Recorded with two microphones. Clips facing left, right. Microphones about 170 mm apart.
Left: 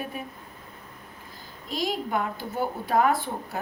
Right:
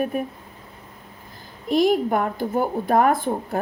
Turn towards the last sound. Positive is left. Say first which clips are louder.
# right 6 dB
turn(degrees=-50)  # may be behind; listen again after turning